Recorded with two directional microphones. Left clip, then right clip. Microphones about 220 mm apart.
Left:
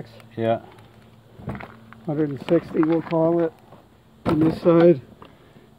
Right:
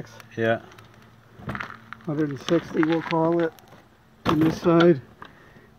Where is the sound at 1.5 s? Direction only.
10° right (ahead or behind).